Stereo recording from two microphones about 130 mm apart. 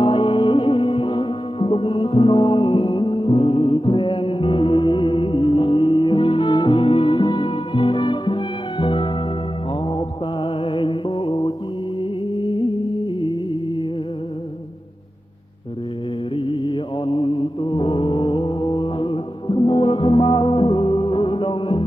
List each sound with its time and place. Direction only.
0.0 s music: 40° left (ahead or behind)
9.8 s mantra: 40° left (ahead or behind)
12.0 s music: 40° left (ahead or behind)
16.3 s music: 40° left (ahead or behind)